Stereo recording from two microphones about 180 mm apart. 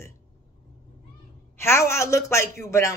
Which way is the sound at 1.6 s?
15° left (ahead or behind).